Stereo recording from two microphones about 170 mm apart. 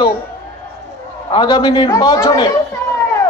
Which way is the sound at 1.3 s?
25° left (ahead or behind).